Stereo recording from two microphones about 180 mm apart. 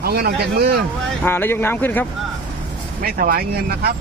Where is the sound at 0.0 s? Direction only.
60° right (ahead or behind).